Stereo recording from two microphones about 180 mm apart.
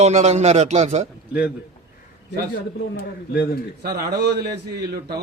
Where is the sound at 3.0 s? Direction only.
60° left (ahead or behind).